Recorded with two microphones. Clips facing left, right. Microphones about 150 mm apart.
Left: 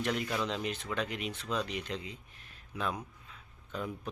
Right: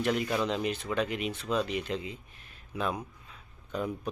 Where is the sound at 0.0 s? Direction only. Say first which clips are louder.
Right 4 dB; 10° right (ahead or behind).